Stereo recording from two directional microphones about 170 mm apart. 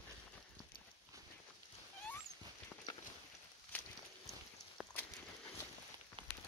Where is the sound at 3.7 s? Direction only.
10° left (ahead or behind).